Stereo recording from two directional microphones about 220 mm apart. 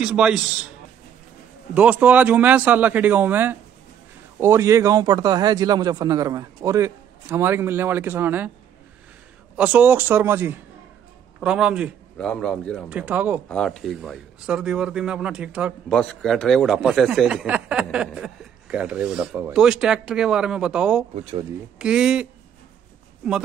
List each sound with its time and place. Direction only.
0.0 s speech: 5° right (ahead or behind)
9.6 s speech: 5° right (ahead or behind)
21.1 s speech: 25° right (ahead or behind)
21.7 s speech: 5° right (ahead or behind)